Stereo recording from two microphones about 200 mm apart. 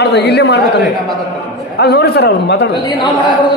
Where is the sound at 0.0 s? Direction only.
55° left (ahead or behind).